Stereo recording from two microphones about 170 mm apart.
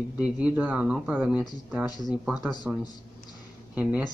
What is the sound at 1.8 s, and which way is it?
Speech, 25° left (ahead or behind).